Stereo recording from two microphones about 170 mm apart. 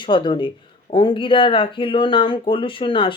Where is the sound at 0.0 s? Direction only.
30° left (ahead or behind).